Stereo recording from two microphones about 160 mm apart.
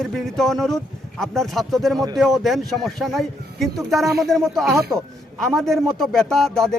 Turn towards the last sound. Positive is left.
turn(degrees=0)  # may be behind; listen again after turning